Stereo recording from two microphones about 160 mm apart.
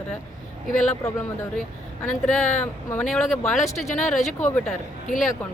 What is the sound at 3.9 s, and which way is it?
Speech, 50° left (ahead or behind).